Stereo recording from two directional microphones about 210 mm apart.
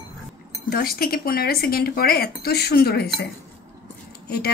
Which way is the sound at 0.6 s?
45° left (ahead or behind).